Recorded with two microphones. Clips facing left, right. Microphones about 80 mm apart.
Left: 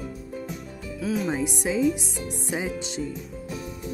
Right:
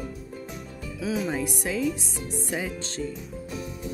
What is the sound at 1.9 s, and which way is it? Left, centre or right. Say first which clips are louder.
Music: left 1 dB; centre.